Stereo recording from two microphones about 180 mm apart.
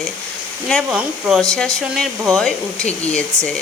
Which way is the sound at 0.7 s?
5° right (ahead or behind).